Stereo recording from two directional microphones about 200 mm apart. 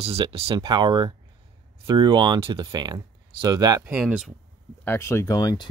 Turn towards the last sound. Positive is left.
turn(degrees=15)  # may be behind; listen again after turning